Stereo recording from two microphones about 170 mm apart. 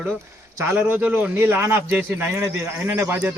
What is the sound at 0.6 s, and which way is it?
A man's voice, 10° right (ahead or behind).